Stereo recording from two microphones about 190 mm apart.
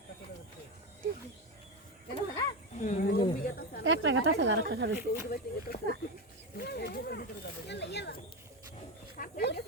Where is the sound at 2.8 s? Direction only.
45° left (ahead or behind).